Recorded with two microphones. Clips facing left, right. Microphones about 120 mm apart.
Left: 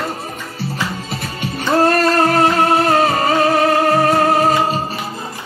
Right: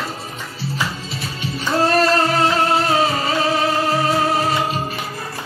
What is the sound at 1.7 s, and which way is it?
Music, 55° left (ahead or behind).